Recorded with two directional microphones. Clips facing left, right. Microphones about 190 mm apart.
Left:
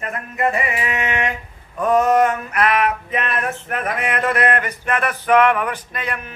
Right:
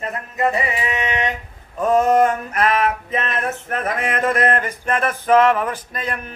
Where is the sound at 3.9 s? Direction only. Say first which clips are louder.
Right 1 dB; 30° right (ahead or behind).